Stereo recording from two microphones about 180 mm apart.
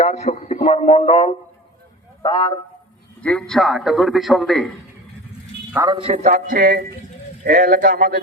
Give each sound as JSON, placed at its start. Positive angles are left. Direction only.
{"t": 0.0, "sound": "a man's voice", "side_deg": 40}
{"t": 2.2, "sound": "a man's voice", "side_deg": 20}
{"t": 3.2, "sound": "a man's voice", "side_deg": 5}
{"t": 5.7, "sound": "a man's voice", "side_deg": -15}
{"t": 6.0, "sound": "speech", "side_deg": -35}